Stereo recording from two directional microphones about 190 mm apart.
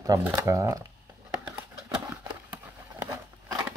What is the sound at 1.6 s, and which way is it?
Horse, 10° right (ahead or behind).